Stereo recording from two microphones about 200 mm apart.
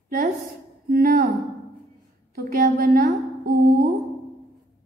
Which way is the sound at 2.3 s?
45° right (ahead or behind).